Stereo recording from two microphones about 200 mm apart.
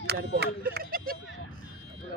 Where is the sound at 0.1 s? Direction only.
50° right (ahead or behind).